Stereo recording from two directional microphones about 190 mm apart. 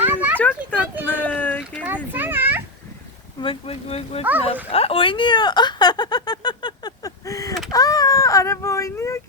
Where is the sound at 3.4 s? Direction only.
30° left (ahead or behind).